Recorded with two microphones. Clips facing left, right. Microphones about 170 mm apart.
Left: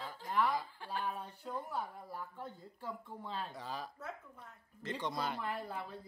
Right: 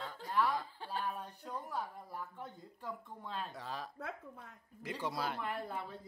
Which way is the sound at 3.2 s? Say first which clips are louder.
Even; centre (ahead or behind).